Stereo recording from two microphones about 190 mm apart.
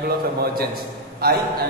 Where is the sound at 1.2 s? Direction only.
55° right (ahead or behind).